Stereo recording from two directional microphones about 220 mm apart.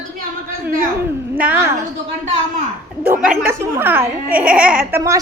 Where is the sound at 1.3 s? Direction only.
10° right (ahead or behind).